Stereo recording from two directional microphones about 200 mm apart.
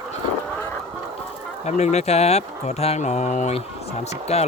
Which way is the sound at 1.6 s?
35° left (ahead or behind).